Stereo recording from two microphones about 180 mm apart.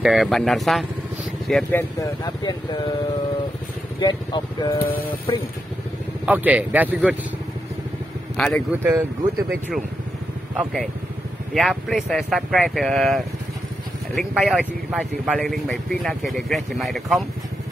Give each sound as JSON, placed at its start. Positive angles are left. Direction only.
{"t": 0.0, "sound": "speech", "side_deg": 0}
{"t": 4.0, "sound": "speech", "side_deg": 25}
{"t": 6.2, "sound": "speech", "side_deg": -10}
{"t": 8.4, "sound": "speech", "side_deg": 0}
{"t": 8.7, "sound": "speech", "side_deg": -15}
{"t": 9.5, "sound": "speech", "side_deg": 0}